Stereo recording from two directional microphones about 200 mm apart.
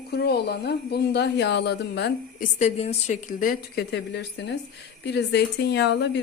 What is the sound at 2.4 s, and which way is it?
A woman's voice, 35° left (ahead or behind).